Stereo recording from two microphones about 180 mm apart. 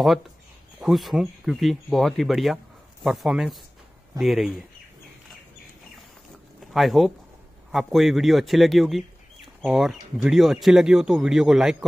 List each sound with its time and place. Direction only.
0.7 s speech: centre (ahead or behind)
6.7 s speech: centre (ahead or behind)